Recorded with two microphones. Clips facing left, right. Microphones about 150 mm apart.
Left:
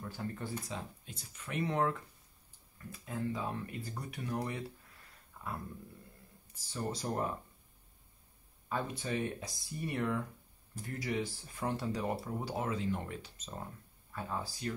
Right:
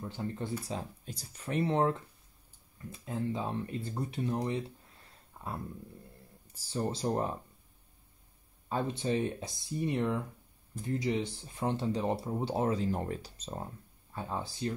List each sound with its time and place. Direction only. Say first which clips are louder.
0.0 s speech: right 3 dB; 20° right (ahead or behind)
8.6 s speech: right 5 dB; 25° right (ahead or behind)